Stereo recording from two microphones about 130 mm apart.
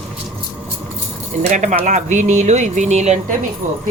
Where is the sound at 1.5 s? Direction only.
70° right (ahead or behind).